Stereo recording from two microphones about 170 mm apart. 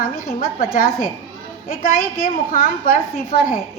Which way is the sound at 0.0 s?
55° left (ahead or behind).